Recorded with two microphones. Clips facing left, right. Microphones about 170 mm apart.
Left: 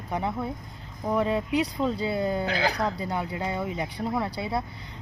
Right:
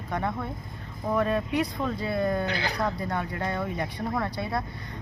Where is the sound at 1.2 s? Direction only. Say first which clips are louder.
Left 1 dB; 20° left (ahead or behind).